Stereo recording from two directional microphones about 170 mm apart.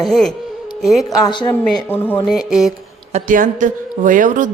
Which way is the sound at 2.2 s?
Centre (ahead or behind).